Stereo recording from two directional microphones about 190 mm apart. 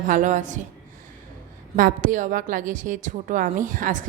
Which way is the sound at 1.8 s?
45° right (ahead or behind).